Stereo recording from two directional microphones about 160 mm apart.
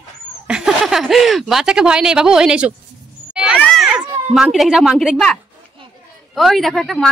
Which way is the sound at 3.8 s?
5° right (ahead or behind).